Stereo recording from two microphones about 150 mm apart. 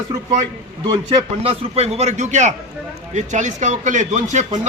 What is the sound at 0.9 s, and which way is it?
A man's voice, 35° right (ahead or behind).